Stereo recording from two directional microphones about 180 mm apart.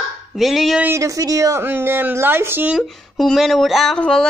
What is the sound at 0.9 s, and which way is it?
Speech, 20° right (ahead or behind).